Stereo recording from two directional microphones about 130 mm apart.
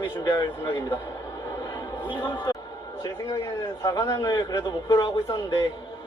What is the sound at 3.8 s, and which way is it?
A man's voice, 25° left (ahead or behind).